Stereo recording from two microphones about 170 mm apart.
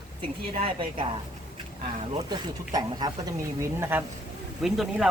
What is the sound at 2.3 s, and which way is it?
Speech, 25° right (ahead or behind).